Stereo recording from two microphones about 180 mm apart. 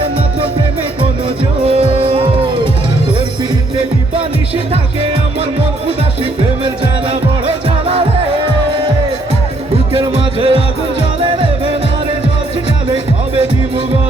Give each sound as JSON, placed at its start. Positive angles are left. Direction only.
{"t": 1.6, "sound": "music", "side_deg": -30}
{"t": 10.0, "sound": "music", "side_deg": -30}
{"t": 12.9, "sound": "music", "side_deg": -30}